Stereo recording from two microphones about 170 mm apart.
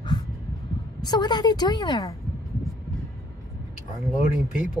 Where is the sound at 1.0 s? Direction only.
25° left (ahead or behind).